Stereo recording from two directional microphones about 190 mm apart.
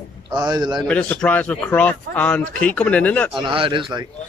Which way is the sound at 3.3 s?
25° right (ahead or behind).